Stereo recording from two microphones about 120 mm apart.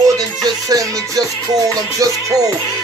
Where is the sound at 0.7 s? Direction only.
30° right (ahead or behind).